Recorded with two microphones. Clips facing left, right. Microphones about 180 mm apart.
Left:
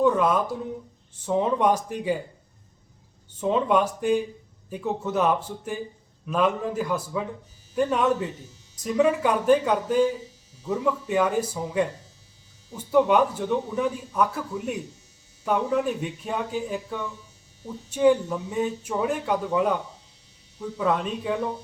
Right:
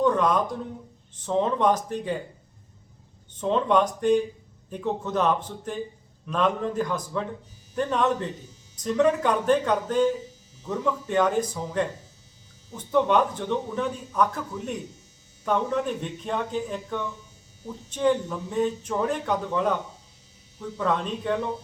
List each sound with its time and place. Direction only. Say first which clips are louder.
0.0 s a sound: left 1 dB; 5° left (ahead or behind)
1.1 s speech: left 1 dB; 10° left (ahead or behind)
3.3 s speech: even; 10° left (ahead or behind)